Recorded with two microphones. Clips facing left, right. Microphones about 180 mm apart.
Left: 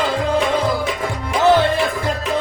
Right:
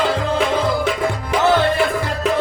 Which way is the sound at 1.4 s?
20° left (ahead or behind).